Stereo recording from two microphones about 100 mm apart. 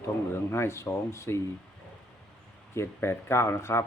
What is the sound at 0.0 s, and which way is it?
Speech, 25° left (ahead or behind).